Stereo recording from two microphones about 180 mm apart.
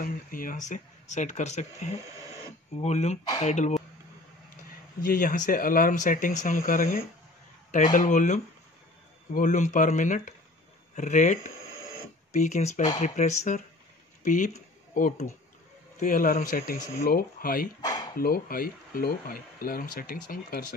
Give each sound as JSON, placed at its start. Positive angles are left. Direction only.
{"t": 0.0, "sound": "speech", "side_deg": 50}
{"t": 5.0, "sound": "speech", "side_deg": 50}
{"t": 16.7, "sound": "speech", "side_deg": 20}
{"t": 17.0, "sound": "speech", "side_deg": 55}
{"t": 17.8, "sound": "a sound", "side_deg": 25}
{"t": 18.1, "sound": "speech", "side_deg": 55}